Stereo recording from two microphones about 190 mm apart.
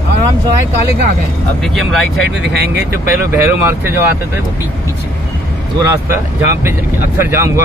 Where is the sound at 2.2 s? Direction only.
60° right (ahead or behind).